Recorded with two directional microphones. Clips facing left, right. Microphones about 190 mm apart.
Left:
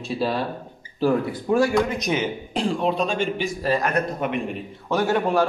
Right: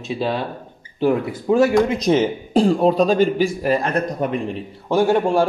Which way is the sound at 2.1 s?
35° right (ahead or behind).